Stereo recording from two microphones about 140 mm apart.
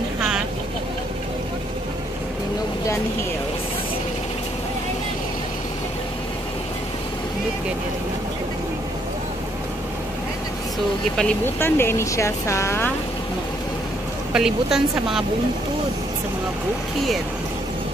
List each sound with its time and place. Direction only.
11.1 s speech: 10° left (ahead or behind)
14.3 s speech: 5° right (ahead or behind)